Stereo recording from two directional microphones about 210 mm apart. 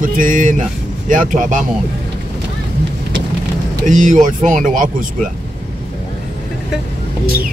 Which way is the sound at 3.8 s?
35° right (ahead or behind).